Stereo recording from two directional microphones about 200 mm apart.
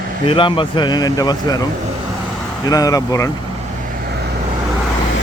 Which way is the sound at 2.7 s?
15° left (ahead or behind).